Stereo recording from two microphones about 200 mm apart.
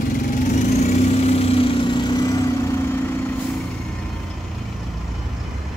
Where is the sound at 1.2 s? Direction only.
30° left (ahead or behind).